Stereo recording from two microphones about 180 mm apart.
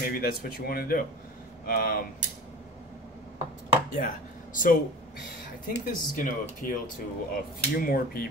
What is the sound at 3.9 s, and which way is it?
Speech, 50° left (ahead or behind).